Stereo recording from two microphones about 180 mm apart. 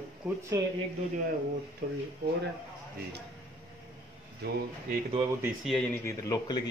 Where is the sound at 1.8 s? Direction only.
50° right (ahead or behind).